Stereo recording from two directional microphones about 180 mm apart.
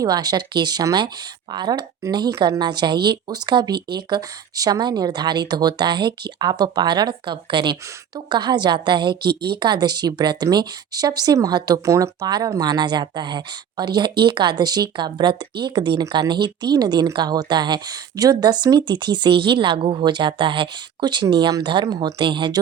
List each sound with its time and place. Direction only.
0.0 s speech: 20° right (ahead or behind)
9.3 s speech: 60° right (ahead or behind)
9.6 s speech: 25° right (ahead or behind)